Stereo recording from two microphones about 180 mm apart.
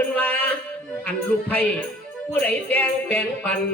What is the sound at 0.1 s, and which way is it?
Music, 10° left (ahead or behind).